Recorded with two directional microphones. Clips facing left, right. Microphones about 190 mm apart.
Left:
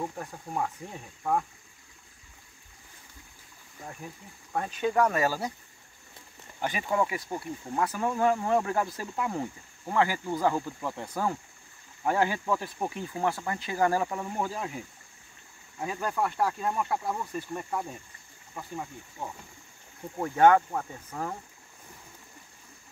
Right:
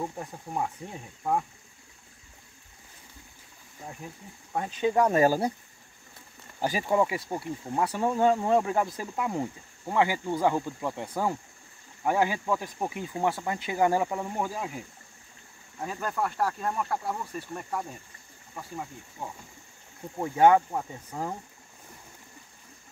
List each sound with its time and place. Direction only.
0.0 s speech: 5° right (ahead or behind)
4.5 s speech: 15° right (ahead or behind)
5.1 s speech: 40° right (ahead or behind)
6.9 s speech: 25° right (ahead or behind)
8.5 s speech: 15° right (ahead or behind)
15.8 s speech: 5° left (ahead or behind)
20.2 s speech: 10° right (ahead or behind)